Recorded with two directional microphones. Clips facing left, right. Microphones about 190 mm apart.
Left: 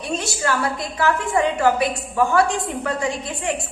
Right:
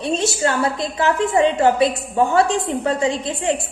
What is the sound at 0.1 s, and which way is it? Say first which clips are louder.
A woman's voice: right 3 dB; 25° right (ahead or behind).